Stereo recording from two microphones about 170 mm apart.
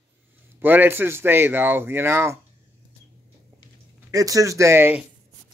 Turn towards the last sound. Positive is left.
turn(degrees=-15)  # may be behind; listen again after turning